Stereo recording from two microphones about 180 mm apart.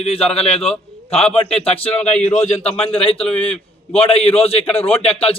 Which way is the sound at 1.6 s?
30° left (ahead or behind).